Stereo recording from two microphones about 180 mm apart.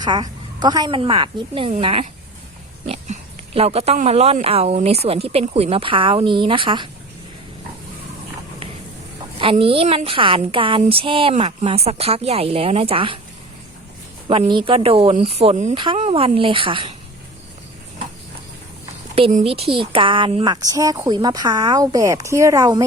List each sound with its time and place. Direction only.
0.0 s a woman's voice: 25° right (ahead or behind)
9.4 s speech: 30° right (ahead or behind)
14.3 s speech: 30° right (ahead or behind)
15.7 s a woman's voice: 30° right (ahead or behind)
19.1 s a woman's voice: 35° right (ahead or behind); by 22.9 s 20° right (ahead or behind)